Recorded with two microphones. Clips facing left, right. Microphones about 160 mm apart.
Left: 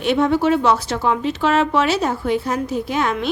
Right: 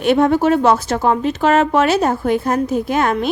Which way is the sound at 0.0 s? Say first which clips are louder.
Right 3 dB; 50° right (ahead or behind).